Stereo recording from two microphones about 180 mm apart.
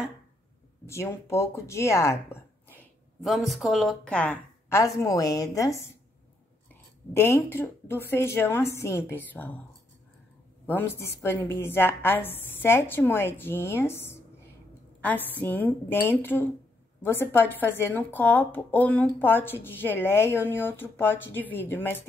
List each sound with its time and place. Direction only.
0.8 s speech: 15° left (ahead or behind)
3.2 s speech: centre (ahead or behind)
10.7 s speech: 15° left (ahead or behind)